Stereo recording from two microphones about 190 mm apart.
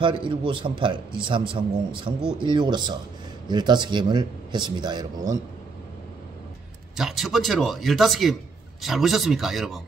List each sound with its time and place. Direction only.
0.0 s a man's voice: 25° right (ahead or behind)
7.0 s speech: centre (ahead or behind)